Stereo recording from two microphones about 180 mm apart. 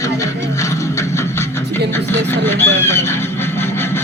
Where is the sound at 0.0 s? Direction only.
15° left (ahead or behind).